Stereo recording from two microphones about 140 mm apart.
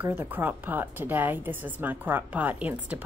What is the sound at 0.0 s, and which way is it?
A woman's voice, 15° right (ahead or behind).